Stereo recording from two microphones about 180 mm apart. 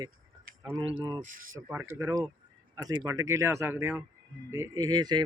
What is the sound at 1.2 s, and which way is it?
Speech, 50° right (ahead or behind).